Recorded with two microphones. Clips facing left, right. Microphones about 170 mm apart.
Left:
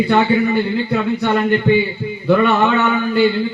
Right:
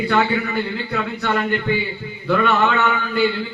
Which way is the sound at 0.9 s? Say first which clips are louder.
Left 6 dB; 20° left (ahead or behind).